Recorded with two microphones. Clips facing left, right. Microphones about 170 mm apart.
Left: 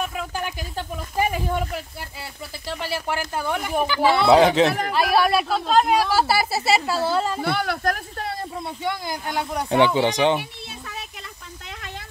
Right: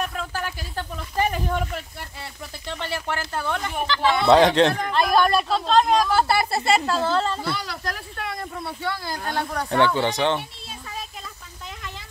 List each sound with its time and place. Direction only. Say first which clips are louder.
0.0 s snake: left 1 dB; 10° left (ahead or behind)
2.7 s a man's voice: left 2 dB; 5° left (ahead or behind)
7.4 s speech: left 6 dB; 60° left (ahead or behind)
8.6 s a man's voice: left 2 dB; 15° left (ahead or behind)